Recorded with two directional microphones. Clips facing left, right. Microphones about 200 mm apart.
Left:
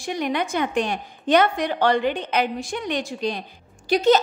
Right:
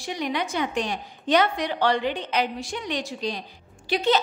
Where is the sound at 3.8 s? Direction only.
45° left (ahead or behind).